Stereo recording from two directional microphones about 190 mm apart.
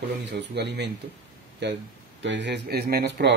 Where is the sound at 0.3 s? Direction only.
65° right (ahead or behind).